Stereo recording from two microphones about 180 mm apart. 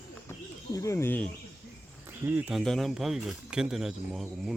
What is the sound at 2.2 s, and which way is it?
Speech, 10° right (ahead or behind).